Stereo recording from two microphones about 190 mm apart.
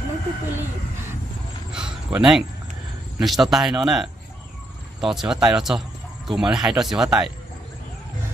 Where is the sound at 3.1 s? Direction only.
Centre (ahead or behind).